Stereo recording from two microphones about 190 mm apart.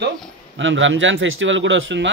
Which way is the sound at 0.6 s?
85° right.